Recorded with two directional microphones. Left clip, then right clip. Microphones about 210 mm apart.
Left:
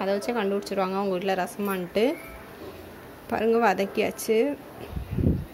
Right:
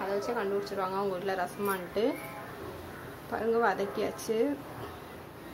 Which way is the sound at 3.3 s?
40° left (ahead or behind).